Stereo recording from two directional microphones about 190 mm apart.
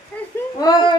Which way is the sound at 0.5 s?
20° left (ahead or behind).